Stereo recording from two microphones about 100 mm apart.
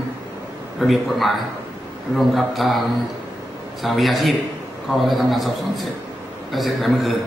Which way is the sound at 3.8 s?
Centre (ahead or behind).